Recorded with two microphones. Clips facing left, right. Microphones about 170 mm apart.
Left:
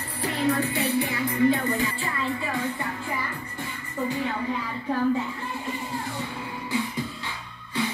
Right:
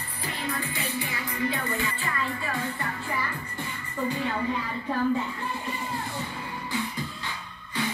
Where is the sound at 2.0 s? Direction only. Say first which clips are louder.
Left 2 dB; 15° left (ahead or behind).